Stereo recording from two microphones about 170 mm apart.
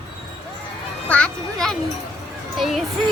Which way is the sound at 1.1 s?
5° left (ahead or behind).